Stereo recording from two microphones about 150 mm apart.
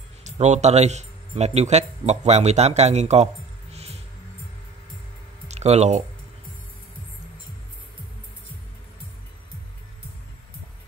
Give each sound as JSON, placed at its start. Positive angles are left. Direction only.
{"t": 0.2, "sound": "speech", "side_deg": -50}
{"t": 3.7, "sound": "music", "side_deg": -45}
{"t": 5.5, "sound": "speech", "side_deg": -45}